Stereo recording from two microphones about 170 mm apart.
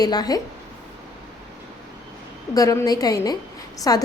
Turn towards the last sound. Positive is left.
turn(degrees=20)  # may be behind; listen again after turning